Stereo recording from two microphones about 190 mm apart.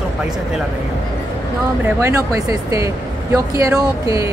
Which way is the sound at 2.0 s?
15° right (ahead or behind).